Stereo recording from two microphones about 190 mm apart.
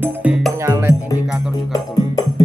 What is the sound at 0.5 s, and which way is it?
Music, 15° right (ahead or behind).